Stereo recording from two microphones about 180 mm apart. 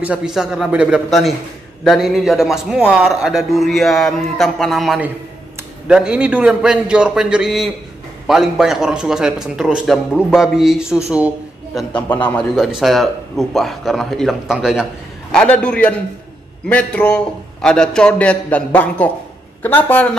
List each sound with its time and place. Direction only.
0.0 s a man's voice: 5° right (ahead or behind)
11.1 s a sound: 5° right (ahead or behind)
11.9 s a man's voice: 10° left (ahead or behind)
15.3 s a man's voice: 5° left (ahead or behind)